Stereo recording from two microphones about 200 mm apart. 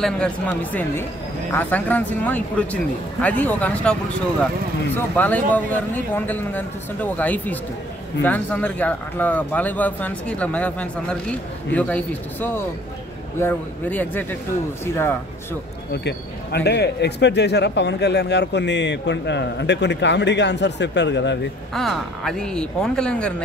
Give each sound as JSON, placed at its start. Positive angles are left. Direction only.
{"t": 0.0, "sound": "speech", "side_deg": 5}
{"t": 4.9, "sound": "speech", "side_deg": 10}
{"t": 15.9, "sound": "speech", "side_deg": 60}
{"t": 21.7, "sound": "speech", "side_deg": 0}